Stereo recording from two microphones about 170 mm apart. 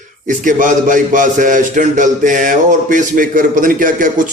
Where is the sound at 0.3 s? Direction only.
50° right (ahead or behind).